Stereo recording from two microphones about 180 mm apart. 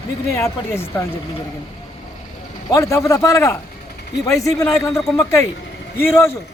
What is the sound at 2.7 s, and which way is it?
A man's voice, 20° left (ahead or behind).